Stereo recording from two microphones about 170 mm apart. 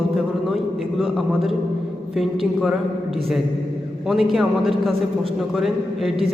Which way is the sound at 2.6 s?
Centre (ahead or behind).